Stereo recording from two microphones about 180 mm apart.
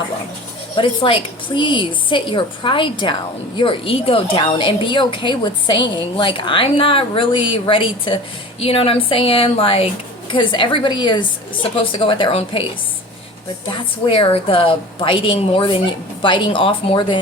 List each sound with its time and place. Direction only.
0.8 s a woman's voice: 30° left (ahead or behind)
13.7 s speech: 30° left (ahead or behind)